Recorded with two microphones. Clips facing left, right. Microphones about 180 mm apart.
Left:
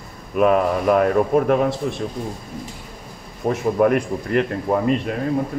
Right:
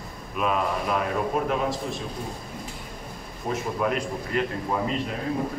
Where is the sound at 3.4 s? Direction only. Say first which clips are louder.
Left 9 dB; 60° left (ahead or behind).